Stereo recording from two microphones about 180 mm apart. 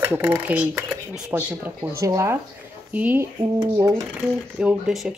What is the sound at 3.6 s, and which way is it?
Speech, 20° right (ahead or behind).